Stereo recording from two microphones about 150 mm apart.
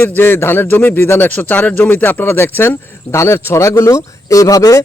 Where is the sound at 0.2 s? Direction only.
15° left (ahead or behind).